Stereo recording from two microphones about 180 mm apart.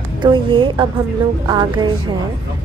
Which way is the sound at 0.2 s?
25° right (ahead or behind).